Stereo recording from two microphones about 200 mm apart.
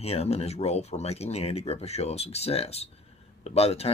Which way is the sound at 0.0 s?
30° left (ahead or behind).